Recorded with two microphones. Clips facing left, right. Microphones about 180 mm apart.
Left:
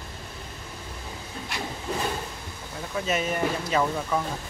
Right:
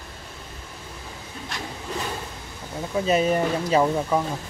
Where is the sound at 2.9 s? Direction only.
30° right (ahead or behind).